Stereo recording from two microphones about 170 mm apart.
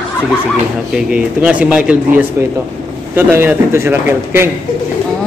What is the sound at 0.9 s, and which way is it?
Speech, 5° right (ahead or behind).